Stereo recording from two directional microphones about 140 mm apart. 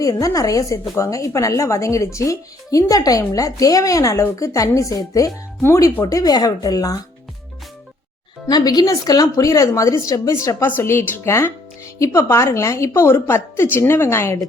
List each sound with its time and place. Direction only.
0.0 s a woman's voice: 25° left (ahead or behind)
8.4 s a woman's voice: 30° left (ahead or behind)